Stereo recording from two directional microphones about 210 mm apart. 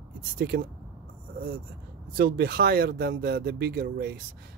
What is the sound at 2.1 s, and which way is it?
Speech, 45° right (ahead or behind).